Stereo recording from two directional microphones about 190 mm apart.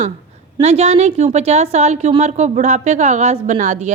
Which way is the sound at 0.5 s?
35° right (ahead or behind).